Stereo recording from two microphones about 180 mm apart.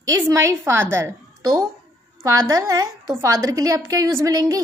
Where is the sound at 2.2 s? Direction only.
20° right (ahead or behind).